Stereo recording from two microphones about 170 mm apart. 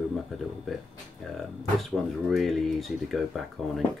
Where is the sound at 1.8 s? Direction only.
Centre (ahead or behind).